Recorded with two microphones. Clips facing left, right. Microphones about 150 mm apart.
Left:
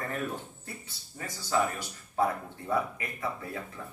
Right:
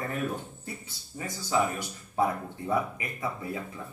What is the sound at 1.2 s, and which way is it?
Speech, 15° right (ahead or behind).